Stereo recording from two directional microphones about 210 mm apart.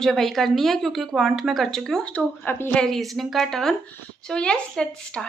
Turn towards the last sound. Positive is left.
turn(degrees=5)  # may be behind; listen again after turning